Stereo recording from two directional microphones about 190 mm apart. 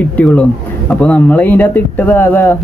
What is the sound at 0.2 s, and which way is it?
Speech, 5° left (ahead or behind).